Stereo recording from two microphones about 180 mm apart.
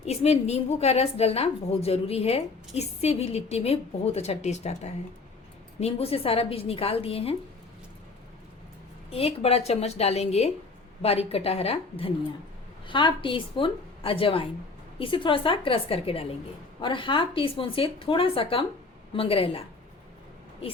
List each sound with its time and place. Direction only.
0.0 s a woman's voice: 35° left (ahead or behind)
9.0 s a woman's voice: 35° left (ahead or behind)